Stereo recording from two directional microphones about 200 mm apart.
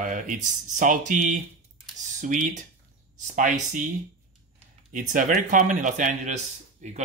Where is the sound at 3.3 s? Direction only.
40° right (ahead or behind).